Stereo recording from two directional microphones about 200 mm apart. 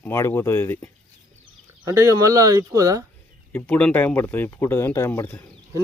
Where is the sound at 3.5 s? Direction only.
5° left (ahead or behind).